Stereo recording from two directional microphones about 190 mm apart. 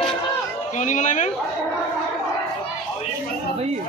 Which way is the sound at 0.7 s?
40° left (ahead or behind).